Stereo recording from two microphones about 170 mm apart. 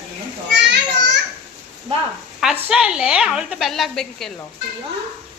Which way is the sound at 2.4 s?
5° right (ahead or behind).